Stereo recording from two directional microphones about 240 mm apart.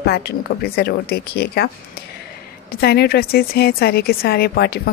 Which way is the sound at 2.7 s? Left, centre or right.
Left.